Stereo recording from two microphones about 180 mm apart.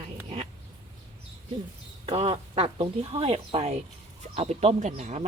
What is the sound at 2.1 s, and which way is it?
Speech, 30° right (ahead or behind).